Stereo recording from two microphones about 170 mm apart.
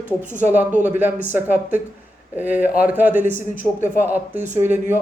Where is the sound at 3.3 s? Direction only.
50° left (ahead or behind).